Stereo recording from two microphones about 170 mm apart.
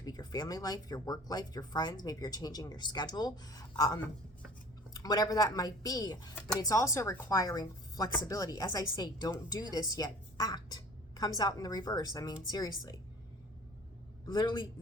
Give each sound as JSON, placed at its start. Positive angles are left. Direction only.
{"t": 0.0, "sound": "speech", "side_deg": 25}
{"t": 5.0, "sound": "speech", "side_deg": 20}
{"t": 14.3, "sound": "speech", "side_deg": 25}